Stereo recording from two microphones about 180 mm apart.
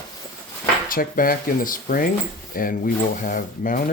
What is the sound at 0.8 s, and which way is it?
Speech, 50° left (ahead or behind).